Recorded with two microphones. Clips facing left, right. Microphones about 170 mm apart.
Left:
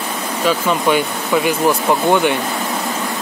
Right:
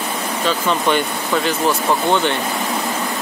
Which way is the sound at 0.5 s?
10° left (ahead or behind).